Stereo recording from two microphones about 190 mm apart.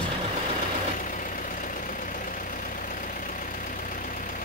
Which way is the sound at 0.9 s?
45° left (ahead or behind).